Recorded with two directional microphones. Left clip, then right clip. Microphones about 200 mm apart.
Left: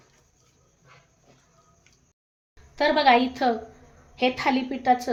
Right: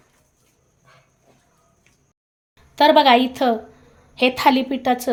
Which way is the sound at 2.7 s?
50° right (ahead or behind).